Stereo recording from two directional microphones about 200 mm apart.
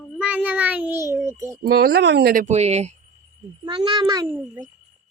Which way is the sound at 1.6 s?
50° right (ahead or behind).